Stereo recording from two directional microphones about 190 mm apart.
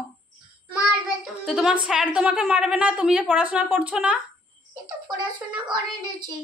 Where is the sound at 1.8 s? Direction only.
5° right (ahead or behind).